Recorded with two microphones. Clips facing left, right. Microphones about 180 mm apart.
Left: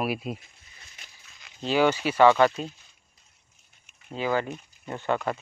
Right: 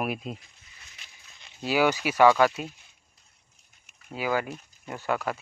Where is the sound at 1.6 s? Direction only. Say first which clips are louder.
Left 1 dB; 10° right (ahead or behind).